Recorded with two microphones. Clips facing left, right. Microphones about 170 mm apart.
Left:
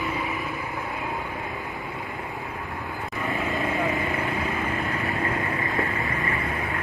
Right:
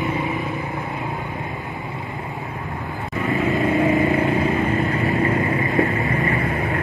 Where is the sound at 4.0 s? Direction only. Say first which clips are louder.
Right 9 dB; 20° right (ahead or behind).